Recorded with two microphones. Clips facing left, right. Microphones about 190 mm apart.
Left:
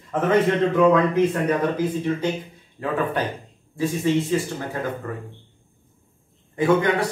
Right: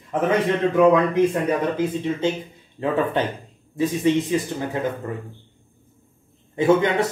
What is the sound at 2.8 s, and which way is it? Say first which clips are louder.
A man's voice: right 2 dB; 25° right (ahead or behind).